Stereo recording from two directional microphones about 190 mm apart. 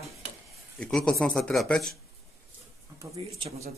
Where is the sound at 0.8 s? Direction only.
5° left (ahead or behind).